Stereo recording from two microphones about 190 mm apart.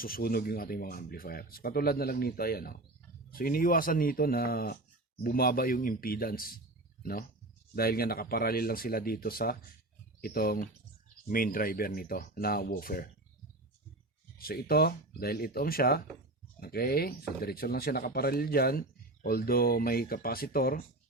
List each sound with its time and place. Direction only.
0.0 s speech: 50° left (ahead or behind)
14.3 s speech: 50° left (ahead or behind)